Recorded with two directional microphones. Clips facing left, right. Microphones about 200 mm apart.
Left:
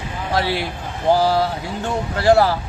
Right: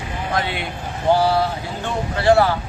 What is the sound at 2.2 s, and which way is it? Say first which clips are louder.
Speech: left 1 dB; 35° left (ahead or behind).